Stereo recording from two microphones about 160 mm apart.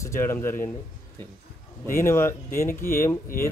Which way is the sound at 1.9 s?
15° left (ahead or behind).